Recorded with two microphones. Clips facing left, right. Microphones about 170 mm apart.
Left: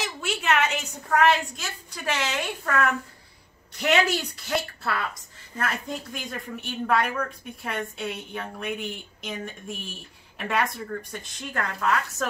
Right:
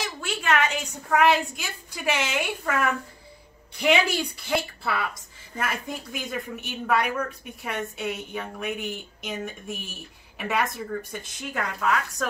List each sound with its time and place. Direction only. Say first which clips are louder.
0.0 s a sound: left 1 dB; 5° left (ahead or behind)
1.1 s a woman's voice: right 1 dB; 10° right (ahead or behind)
4.5 s a woman's voice: even; 10° right (ahead or behind)